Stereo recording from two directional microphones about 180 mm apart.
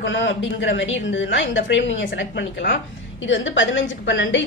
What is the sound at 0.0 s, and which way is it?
A woman's voice, 90° left.